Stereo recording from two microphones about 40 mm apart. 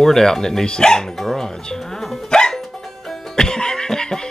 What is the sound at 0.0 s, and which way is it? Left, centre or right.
Speech, centre.